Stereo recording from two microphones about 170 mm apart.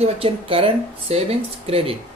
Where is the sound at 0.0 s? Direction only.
35° right (ahead or behind).